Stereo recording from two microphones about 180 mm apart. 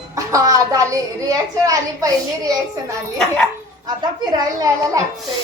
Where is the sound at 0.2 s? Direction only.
20° right (ahead or behind).